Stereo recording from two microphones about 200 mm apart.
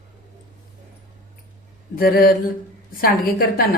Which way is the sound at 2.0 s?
50° left (ahead or behind).